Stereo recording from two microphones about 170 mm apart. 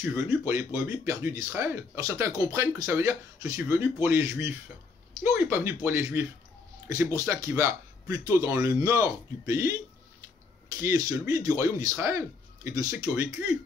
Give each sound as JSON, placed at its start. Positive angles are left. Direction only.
{"t": 0.3, "sound": "speech", "side_deg": -10}
{"t": 10.8, "sound": "speech", "side_deg": -20}